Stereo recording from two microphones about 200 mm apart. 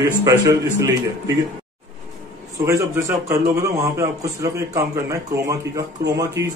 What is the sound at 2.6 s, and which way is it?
A man's voice, 15° right (ahead or behind).